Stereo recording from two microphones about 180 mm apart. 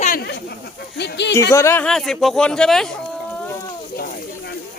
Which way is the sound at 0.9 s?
70° left (ahead or behind).